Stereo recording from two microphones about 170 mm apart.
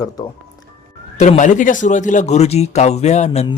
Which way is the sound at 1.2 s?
45° left (ahead or behind).